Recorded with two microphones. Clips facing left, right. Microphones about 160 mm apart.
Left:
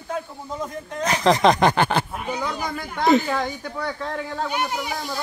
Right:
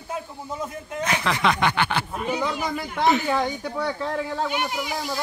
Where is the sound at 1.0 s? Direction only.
35° left (ahead or behind).